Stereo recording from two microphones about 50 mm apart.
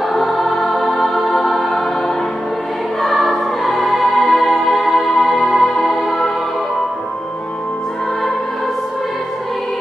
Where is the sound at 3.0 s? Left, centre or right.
Centre.